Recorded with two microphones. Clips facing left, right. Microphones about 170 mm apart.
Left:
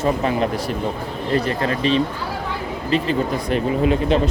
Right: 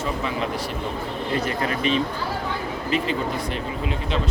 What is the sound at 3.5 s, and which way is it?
Speech, 55° left (ahead or behind).